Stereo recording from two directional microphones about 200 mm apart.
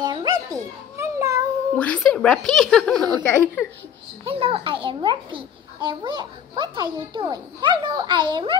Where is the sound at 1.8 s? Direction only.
5° left (ahead or behind).